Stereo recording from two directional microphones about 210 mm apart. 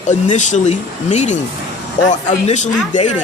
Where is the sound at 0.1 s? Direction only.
35° left (ahead or behind).